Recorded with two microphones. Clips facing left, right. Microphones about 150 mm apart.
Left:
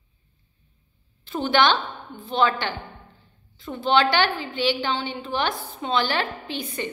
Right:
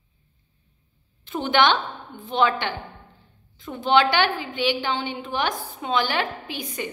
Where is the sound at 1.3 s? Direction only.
15° right (ahead or behind).